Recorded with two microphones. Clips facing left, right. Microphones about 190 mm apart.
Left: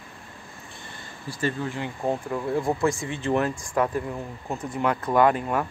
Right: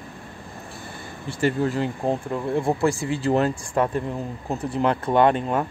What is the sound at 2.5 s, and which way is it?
Speech, 30° right (ahead or behind).